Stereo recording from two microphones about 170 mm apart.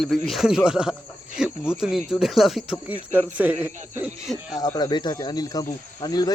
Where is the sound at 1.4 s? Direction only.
5° right (ahead or behind).